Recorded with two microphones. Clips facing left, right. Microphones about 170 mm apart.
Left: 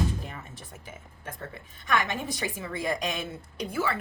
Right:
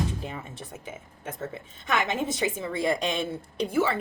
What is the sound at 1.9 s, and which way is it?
A woman's voice, 25° right (ahead or behind).